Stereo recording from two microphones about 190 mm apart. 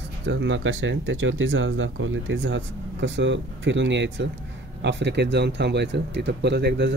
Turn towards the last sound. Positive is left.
turn(degrees=-65)  # may be behind; listen again after turning